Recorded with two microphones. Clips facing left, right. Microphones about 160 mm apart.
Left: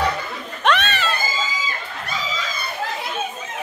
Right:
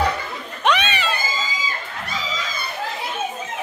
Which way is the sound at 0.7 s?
10° right (ahead or behind).